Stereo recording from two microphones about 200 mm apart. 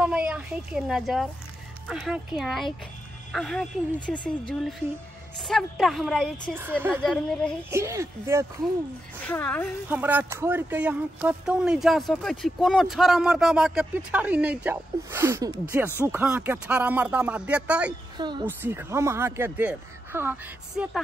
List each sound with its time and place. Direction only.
0.0 s speech: 5° right (ahead or behind)
7.7 s speech: 15° right (ahead or behind)
9.2 s speech: 10° left (ahead or behind)
9.8 s speech: 10° right (ahead or behind)
18.1 s speech: 20° right (ahead or behind)
18.4 s speech: 10° right (ahead or behind)